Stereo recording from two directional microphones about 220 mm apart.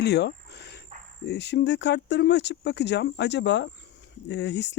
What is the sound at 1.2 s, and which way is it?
Speech, 50° left (ahead or behind).